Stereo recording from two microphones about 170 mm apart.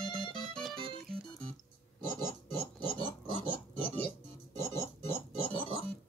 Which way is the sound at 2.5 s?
35° left (ahead or behind).